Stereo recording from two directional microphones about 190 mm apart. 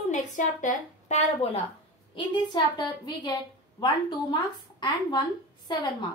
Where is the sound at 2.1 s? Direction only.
25° left (ahead or behind).